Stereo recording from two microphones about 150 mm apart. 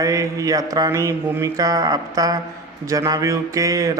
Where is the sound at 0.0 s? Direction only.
20° right (ahead or behind).